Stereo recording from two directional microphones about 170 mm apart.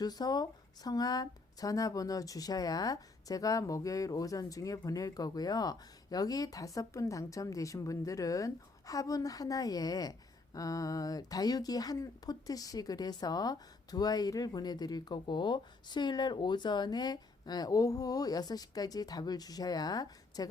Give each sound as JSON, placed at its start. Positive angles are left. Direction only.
{"t": 0.0, "sound": "speech", "side_deg": 25}